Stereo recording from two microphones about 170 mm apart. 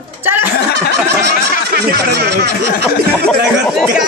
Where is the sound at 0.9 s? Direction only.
70° right (ahead or behind).